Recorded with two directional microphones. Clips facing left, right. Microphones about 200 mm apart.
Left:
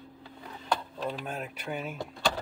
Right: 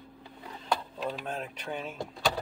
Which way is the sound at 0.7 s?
Centre (ahead or behind).